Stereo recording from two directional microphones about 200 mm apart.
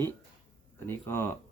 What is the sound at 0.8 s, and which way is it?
Speech, 10° left (ahead or behind).